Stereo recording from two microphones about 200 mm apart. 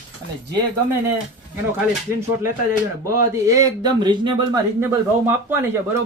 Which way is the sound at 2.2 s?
15° right (ahead or behind).